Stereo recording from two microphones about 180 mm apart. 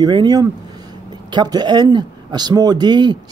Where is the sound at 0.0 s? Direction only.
25° right (ahead or behind).